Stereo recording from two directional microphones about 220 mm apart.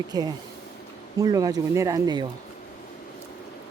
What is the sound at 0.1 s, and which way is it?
Speech, 20° right (ahead or behind).